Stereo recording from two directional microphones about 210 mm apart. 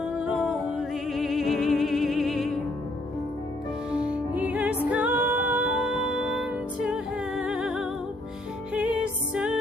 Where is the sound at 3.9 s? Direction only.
5° right (ahead or behind).